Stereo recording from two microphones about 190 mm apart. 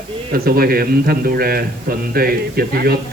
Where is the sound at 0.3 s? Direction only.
50° right (ahead or behind).